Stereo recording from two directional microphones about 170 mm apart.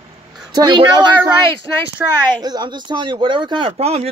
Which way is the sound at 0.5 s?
25° right (ahead or behind).